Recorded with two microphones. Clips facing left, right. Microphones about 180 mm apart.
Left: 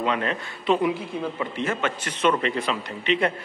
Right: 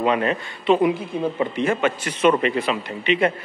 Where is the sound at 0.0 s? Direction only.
10° right (ahead or behind).